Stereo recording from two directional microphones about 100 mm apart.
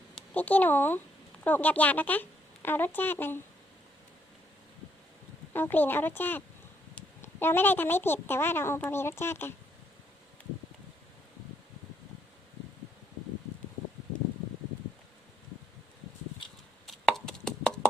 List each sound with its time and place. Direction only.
0.2 s a woman's voice: 15° left (ahead or behind)
5.5 s a woman's voice: 20° left (ahead or behind)
16.8 s chopping: 5° left (ahead or behind)